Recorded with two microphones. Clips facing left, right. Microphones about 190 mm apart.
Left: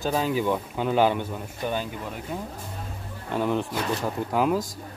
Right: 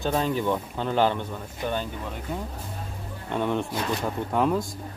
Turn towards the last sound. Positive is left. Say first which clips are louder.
# even
turn(degrees=5)  # may be behind; listen again after turning